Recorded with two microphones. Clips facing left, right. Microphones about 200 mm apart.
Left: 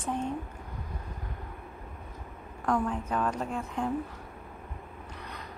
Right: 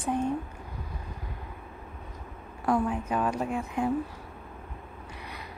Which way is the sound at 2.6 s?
10° right (ahead or behind).